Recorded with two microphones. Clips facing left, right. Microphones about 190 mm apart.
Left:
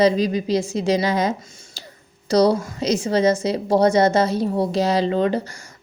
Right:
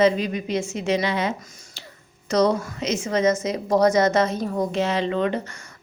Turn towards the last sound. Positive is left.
turn(degrees=35)  # may be behind; listen again after turning